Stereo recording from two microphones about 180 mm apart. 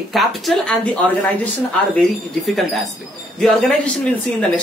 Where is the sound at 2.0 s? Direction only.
Centre (ahead or behind).